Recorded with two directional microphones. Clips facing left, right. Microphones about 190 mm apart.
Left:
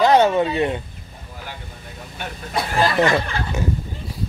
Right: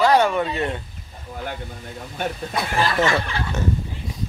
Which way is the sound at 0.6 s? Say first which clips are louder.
Left 4 dB; 15° left (ahead or behind).